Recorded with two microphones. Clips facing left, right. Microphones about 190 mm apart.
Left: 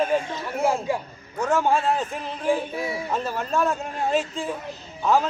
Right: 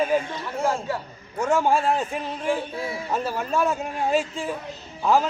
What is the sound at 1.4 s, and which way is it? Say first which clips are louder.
A man's voice: right 1 dB; 10° right (ahead or behind).